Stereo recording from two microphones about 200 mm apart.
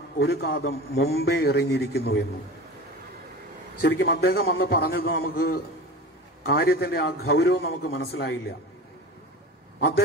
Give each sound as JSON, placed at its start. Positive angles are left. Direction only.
{"t": 0.2, "sound": "a man's voice", "side_deg": 55}
{"t": 3.7, "sound": "a man's voice", "side_deg": 55}
{"t": 9.8, "sound": "a man's voice", "side_deg": 55}